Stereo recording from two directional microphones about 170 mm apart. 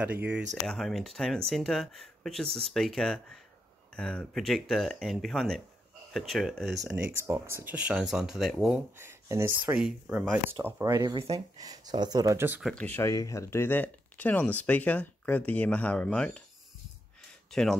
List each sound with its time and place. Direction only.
0.0 s speech: 10° right (ahead or behind)
0.7 s speech: centre (ahead or behind)
7.2 s speech: 15° right (ahead or behind)
12.6 s speech: 10° left (ahead or behind)
17.5 s speech: centre (ahead or behind)